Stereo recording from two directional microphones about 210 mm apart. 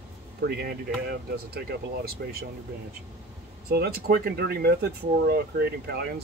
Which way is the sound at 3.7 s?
50° right (ahead or behind).